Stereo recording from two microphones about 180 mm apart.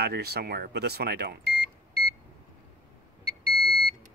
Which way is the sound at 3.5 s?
Centre (ahead or behind).